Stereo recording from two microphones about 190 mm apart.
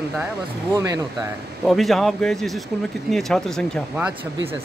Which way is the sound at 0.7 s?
20° right (ahead or behind).